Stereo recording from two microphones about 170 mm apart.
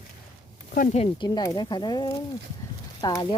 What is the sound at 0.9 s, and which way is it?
Speech, 25° left (ahead or behind).